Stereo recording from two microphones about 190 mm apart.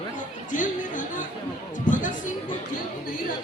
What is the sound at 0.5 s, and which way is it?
Music, 45° left (ahead or behind).